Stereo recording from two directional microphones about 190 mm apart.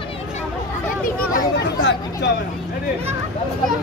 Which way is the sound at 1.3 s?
65° left (ahead or behind).